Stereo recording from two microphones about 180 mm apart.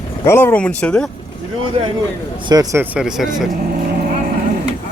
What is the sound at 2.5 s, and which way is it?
Speech, 20° right (ahead or behind).